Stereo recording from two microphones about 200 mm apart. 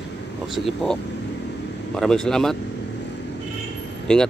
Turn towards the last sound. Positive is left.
turn(degrees=5)  # may be behind; listen again after turning